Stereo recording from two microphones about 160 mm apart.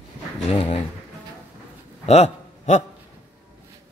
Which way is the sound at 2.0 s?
40° left (ahead or behind).